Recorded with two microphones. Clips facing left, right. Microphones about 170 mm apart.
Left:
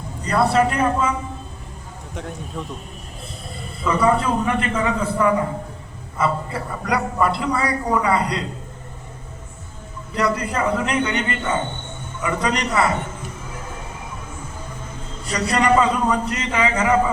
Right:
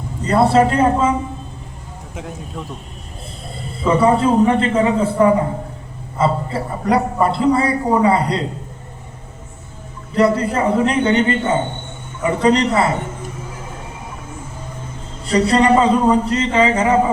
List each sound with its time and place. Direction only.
0.3 s a man's voice: 25° right (ahead or behind)
2.1 s speech: 5° right (ahead or behind)
3.8 s a man's voice: 30° right (ahead or behind)
10.2 s a man's voice: 30° right (ahead or behind)
15.3 s a man's voice: 30° right (ahead or behind)